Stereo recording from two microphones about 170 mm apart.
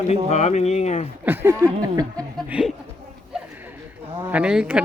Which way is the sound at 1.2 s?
10° right (ahead or behind).